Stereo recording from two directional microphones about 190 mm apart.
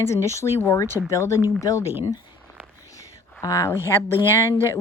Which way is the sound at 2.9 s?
15° left (ahead or behind).